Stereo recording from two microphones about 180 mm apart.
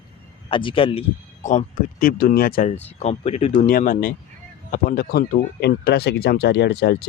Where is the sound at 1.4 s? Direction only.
45° left (ahead or behind).